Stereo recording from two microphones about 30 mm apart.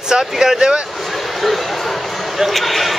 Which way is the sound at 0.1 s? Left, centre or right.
Centre.